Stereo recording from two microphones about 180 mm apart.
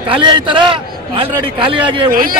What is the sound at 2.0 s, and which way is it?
Speech, 50° right (ahead or behind).